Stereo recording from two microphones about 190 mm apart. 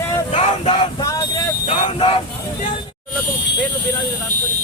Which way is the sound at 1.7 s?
35° left (ahead or behind).